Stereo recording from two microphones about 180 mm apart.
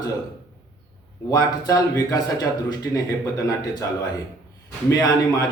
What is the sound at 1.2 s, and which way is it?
Speech, 20° left (ahead or behind).